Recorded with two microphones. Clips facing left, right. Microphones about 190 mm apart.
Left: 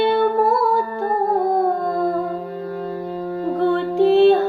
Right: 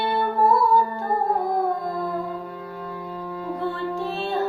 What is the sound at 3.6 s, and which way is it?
Music, 70° left (ahead or behind).